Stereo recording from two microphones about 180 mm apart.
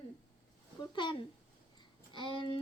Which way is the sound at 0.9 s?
25° left (ahead or behind).